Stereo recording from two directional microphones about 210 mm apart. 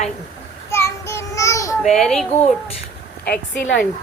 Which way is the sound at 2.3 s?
30° left (ahead or behind).